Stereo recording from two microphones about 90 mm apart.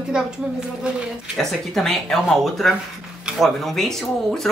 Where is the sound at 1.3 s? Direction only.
5° left (ahead or behind).